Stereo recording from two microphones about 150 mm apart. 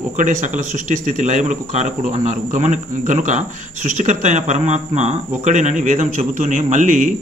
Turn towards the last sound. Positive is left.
turn(degrees=-55)  # may be behind; listen again after turning